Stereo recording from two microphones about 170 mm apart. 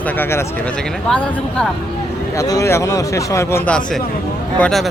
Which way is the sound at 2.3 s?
20° left (ahead or behind).